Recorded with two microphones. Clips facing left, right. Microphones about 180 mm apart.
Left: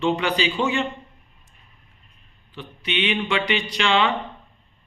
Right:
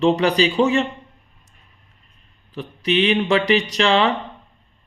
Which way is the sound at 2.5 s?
40° right (ahead or behind).